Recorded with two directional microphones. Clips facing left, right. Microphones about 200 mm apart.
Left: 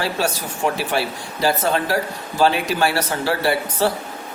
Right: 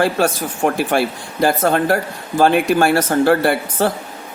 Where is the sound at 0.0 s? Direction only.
50° right (ahead or behind).